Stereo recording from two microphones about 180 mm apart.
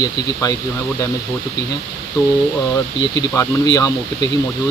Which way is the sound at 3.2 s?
20° left (ahead or behind).